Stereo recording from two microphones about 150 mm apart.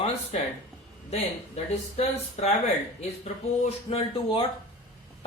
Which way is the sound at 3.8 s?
40° left (ahead or behind).